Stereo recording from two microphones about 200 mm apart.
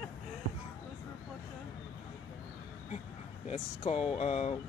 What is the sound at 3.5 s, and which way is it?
Speech, 30° left (ahead or behind).